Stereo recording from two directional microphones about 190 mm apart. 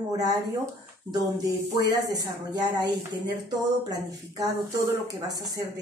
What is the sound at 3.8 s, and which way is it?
A woman's voice, 20° right (ahead or behind).